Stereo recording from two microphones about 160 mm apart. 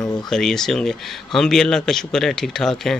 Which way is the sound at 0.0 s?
25° left (ahead or behind).